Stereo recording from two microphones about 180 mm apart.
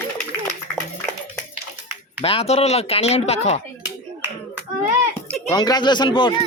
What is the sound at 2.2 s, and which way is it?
Speech, 35° left (ahead or behind).